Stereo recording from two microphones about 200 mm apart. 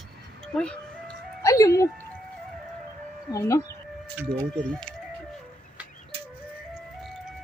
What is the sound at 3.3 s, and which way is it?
Speech, 15° left (ahead or behind).